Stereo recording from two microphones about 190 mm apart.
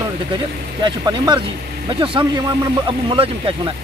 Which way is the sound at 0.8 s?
25° right (ahead or behind).